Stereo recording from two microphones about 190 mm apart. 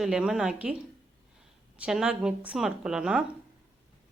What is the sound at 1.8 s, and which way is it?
Speech, 5° right (ahead or behind).